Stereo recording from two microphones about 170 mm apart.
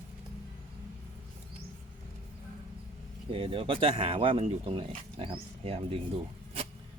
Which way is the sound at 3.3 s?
35° right (ahead or behind).